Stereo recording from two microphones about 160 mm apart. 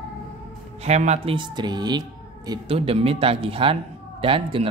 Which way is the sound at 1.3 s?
25° right (ahead or behind).